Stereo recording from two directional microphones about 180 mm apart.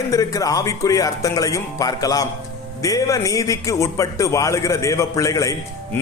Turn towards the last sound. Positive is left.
turn(degrees=15)  # may be behind; listen again after turning